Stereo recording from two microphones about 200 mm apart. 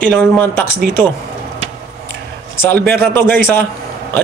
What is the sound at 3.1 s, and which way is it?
Speech, 10° left (ahead or behind).